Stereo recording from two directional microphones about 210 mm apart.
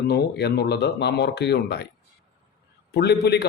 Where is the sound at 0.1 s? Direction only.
50° left (ahead or behind).